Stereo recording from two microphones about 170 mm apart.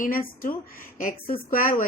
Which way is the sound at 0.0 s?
55° left (ahead or behind).